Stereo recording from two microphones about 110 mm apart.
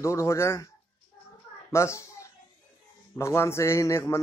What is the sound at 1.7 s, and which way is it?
Speech, 25° left (ahead or behind).